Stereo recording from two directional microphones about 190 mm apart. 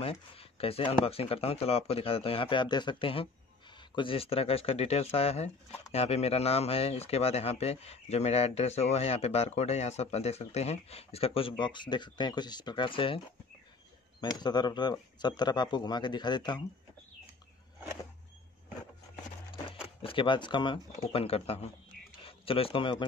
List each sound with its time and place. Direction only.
0.0 s speech: 30° left (ahead or behind)
14.2 s speech: 20° left (ahead or behind)
19.5 s a sound: 30° left (ahead or behind)
21.0 s speech: 30° left (ahead or behind)